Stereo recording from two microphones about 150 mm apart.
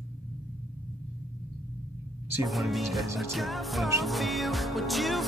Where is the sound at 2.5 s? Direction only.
Centre (ahead or behind).